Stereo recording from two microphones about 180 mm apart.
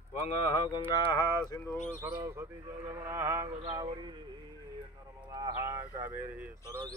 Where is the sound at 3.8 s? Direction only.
25° right (ahead or behind).